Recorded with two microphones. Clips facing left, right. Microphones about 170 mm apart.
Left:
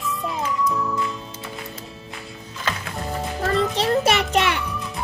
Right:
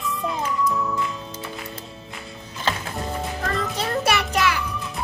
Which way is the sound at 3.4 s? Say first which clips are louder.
Left 8 dB; 30° left (ahead or behind).